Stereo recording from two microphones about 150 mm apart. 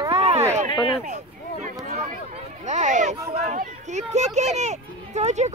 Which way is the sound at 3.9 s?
50° right (ahead or behind).